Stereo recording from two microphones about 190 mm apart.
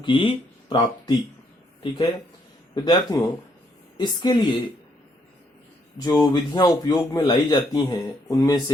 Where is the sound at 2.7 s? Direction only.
20° left (ahead or behind).